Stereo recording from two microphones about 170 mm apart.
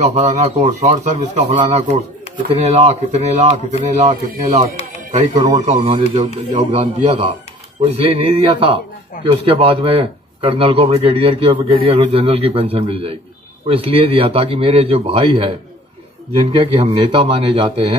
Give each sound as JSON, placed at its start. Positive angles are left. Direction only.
{"t": 0.0, "sound": "a man's voice", "side_deg": -45}
{"t": 5.9, "sound": "a man's voice", "side_deg": -30}
{"t": 6.2, "sound": "a man's voice", "side_deg": -45}